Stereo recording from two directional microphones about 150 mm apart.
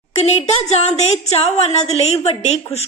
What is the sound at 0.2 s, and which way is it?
A woman's voice, 45° left (ahead or behind).